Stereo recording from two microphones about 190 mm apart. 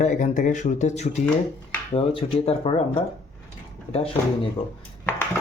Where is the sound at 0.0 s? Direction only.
40° left (ahead or behind).